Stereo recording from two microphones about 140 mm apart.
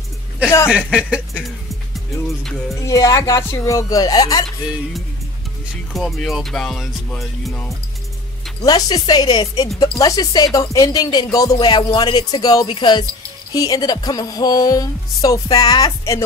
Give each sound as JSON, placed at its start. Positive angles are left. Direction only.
{"t": 0.7, "sound": "speech", "side_deg": -5}
{"t": 2.7, "sound": "a woman's voice", "side_deg": 25}
{"t": 5.9, "sound": "music", "side_deg": 0}
{"t": 8.6, "sound": "a woman's voice", "side_deg": 30}